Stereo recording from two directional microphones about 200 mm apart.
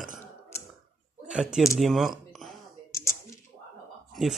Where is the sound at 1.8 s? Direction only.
Centre (ahead or behind).